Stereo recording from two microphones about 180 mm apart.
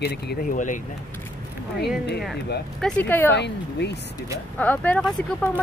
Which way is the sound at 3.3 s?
70° left (ahead or behind).